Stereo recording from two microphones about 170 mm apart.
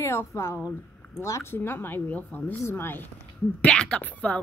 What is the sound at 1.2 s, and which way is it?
Speech, 15° left (ahead or behind).